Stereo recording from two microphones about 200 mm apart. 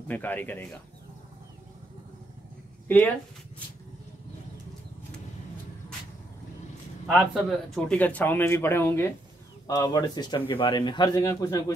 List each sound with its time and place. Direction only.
0.1 s a man's voice: 10° left (ahead or behind)
7.1 s a man's voice: centre (ahead or behind); by 11.6 s 15° left (ahead or behind)